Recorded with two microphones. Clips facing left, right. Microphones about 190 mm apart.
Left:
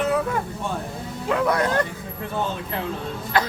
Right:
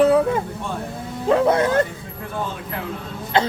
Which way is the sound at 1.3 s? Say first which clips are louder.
Right 5 dB; 30° right (ahead or behind).